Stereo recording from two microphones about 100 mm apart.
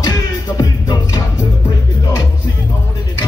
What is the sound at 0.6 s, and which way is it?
Music, 35° left (ahead or behind).